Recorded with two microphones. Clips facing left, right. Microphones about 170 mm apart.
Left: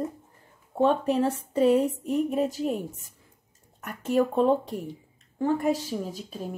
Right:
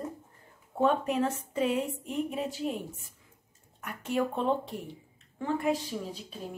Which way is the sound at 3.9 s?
40° left (ahead or behind).